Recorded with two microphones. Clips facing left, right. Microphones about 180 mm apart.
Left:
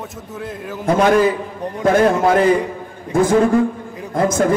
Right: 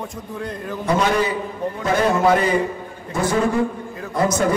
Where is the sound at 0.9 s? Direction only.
50° left (ahead or behind).